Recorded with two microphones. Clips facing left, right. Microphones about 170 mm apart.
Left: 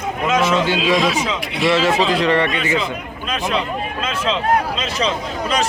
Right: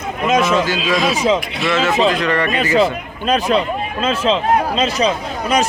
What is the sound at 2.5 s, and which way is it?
Speech, 40° right (ahead or behind).